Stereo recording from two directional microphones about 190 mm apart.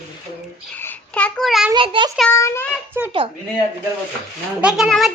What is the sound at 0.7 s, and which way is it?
A child's voice, 10° left (ahead or behind).